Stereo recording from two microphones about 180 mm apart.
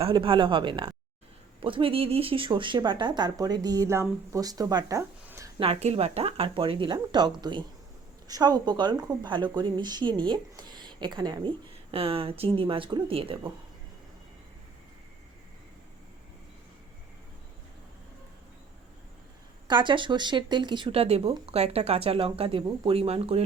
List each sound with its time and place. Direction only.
0.0 s a woman's voice: 30° right (ahead or behind)
5.5 s a woman's voice: 35° right (ahead or behind)
8.3 s a woman's voice: 20° right (ahead or behind)
19.6 s speech: 25° right (ahead or behind)